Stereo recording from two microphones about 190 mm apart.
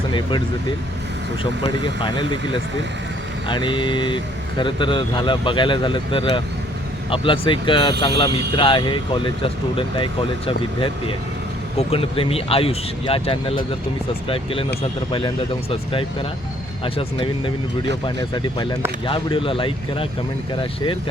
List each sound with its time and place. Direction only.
0.1 s speech: 25° left (ahead or behind)
1.6 s speech: 25° left (ahead or behind)